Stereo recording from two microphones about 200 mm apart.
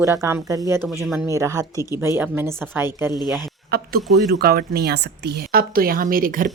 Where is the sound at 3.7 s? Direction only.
50° right (ahead or behind).